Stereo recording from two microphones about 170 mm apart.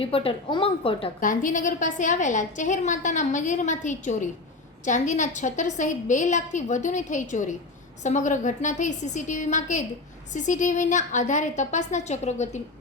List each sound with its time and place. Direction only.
0.0 s a woman's voice: 35° left (ahead or behind)
1.2 s a woman's voice: 50° left (ahead or behind)